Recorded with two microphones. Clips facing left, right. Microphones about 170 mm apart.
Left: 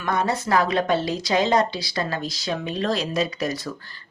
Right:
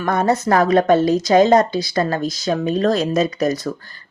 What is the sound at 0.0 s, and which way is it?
Speech, 50° right (ahead or behind).